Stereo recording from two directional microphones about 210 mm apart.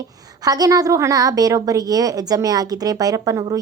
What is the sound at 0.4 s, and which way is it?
A woman's voice, 15° right (ahead or behind).